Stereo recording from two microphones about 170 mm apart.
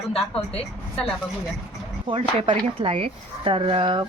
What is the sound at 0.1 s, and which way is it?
Speech, 35° left (ahead or behind).